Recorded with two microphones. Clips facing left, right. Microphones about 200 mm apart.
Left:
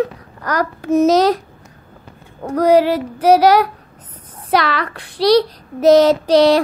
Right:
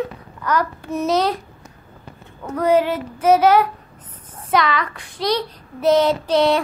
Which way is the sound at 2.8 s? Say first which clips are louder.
Left 4 dB; 35° left (ahead or behind).